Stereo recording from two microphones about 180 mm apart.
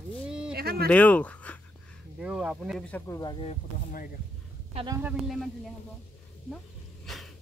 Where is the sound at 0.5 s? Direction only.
60° right (ahead or behind).